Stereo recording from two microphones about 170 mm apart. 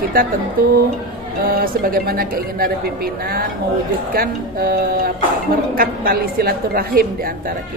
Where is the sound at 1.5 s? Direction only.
60° right (ahead or behind).